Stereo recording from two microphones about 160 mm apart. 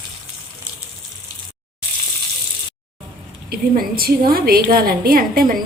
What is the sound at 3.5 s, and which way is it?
A woman's voice, 70° right (ahead or behind).